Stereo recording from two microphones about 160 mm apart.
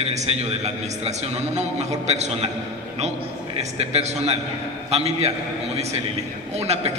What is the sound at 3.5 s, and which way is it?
A man's voice, 40° right (ahead or behind).